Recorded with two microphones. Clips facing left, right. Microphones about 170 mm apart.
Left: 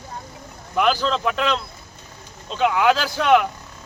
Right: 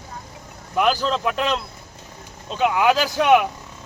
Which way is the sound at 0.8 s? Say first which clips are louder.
Even; 5° right (ahead or behind).